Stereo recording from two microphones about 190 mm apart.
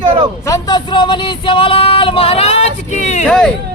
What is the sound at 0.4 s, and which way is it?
Music, 20° left (ahead or behind).